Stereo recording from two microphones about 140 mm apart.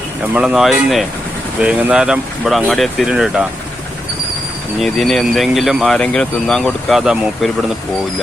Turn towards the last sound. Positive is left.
turn(degrees=-5)  # may be behind; listen again after turning